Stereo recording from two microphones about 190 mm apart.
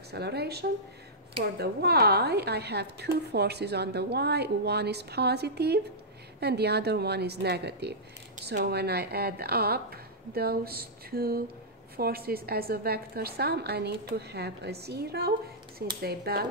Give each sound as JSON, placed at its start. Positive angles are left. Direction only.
{"t": 0.1, "sound": "speech", "side_deg": -60}